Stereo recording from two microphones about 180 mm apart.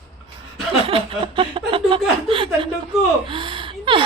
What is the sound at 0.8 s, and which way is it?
Chuckle, 30° right (ahead or behind).